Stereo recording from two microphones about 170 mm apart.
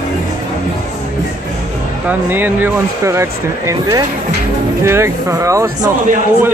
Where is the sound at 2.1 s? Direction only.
10° right (ahead or behind).